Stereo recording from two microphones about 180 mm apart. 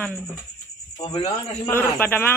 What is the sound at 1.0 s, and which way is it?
Speech, 25° left (ahead or behind).